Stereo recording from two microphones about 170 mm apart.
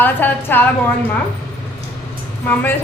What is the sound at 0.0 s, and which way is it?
Speech, 10° left (ahead or behind).